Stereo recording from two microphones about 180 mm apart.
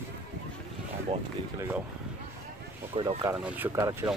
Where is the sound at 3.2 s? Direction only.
10° right (ahead or behind).